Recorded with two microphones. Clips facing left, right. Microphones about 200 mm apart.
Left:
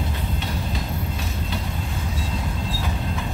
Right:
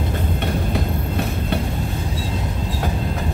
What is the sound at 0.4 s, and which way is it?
Train, 60° right (ahead or behind).